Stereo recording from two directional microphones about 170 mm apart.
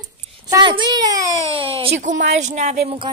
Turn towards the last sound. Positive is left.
turn(degrees=-30)  # may be behind; listen again after turning